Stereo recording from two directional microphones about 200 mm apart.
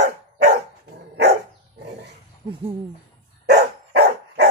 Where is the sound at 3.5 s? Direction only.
55° right (ahead or behind).